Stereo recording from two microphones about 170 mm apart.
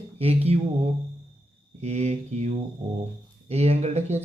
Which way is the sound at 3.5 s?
40° right (ahead or behind).